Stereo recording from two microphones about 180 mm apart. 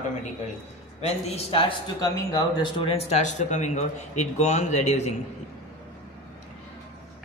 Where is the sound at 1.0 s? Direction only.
35° left (ahead or behind).